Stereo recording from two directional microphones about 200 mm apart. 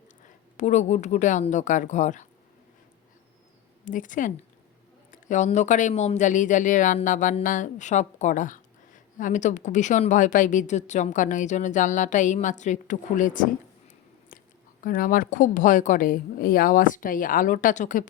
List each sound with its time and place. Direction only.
0.5 s speech: 35° left (ahead or behind)
3.8 s speech: 40° left (ahead or behind)
14.8 s a woman's voice: 45° left (ahead or behind)